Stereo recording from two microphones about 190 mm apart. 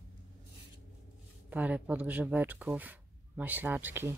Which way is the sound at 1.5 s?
10° right (ahead or behind).